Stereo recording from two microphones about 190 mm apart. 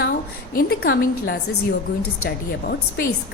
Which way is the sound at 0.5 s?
50° left (ahead or behind).